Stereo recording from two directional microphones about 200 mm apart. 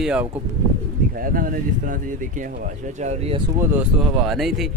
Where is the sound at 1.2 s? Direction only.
45° right (ahead or behind).